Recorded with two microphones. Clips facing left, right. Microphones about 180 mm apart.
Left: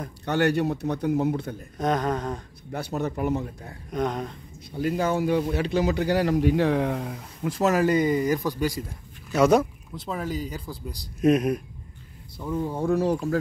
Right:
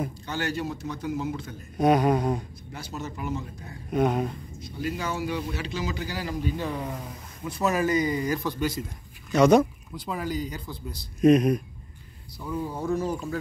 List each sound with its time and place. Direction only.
0.2 s a man's voice: 65° left (ahead or behind)
1.8 s a sound: 10° right (ahead or behind)
2.7 s a man's voice: 60° left (ahead or behind)
3.9 s a sound: 10° right (ahead or behind)
4.6 s a man's voice: 55° left (ahead or behind)
8.3 s speech: 15° left (ahead or behind)
12.8 s speech: 65° left (ahead or behind)